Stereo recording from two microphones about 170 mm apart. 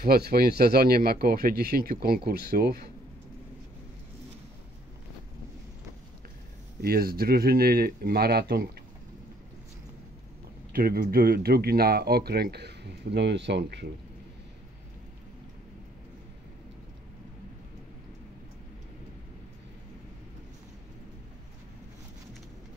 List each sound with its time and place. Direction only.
0.0 s speech: 65° right (ahead or behind)
6.8 s speech: 65° right (ahead or behind)
10.7 s speech: 60° right (ahead or behind); by 13.8 s 85° right